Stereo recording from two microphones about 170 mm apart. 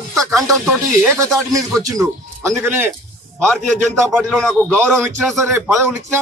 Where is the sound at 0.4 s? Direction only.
20° right (ahead or behind).